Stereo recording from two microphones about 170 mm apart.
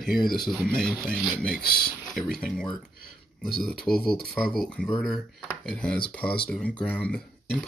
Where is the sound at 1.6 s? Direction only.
65° left (ahead or behind).